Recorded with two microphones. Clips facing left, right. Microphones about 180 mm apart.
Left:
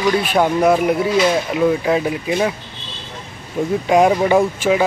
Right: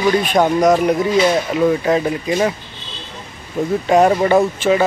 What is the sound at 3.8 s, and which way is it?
Speech, 10° left (ahead or behind).